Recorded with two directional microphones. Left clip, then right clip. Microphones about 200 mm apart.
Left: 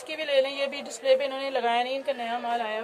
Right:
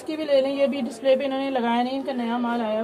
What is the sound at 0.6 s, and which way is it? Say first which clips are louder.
A woman's voice: right 7 dB; 20° left (ahead or behind).